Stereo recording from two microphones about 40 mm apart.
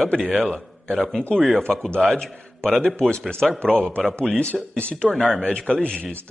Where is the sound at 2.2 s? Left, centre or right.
Centre.